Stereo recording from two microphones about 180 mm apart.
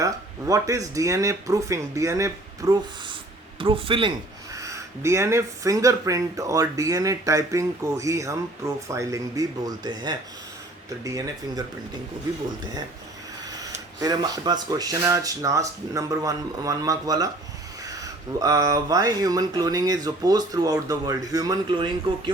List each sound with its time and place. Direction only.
0.0 s speech: 20° right (ahead or behind)
3.6 s speech: 30° right (ahead or behind)
4.5 s speech: 15° right (ahead or behind)
14.0 s speech: 20° right (ahead or behind)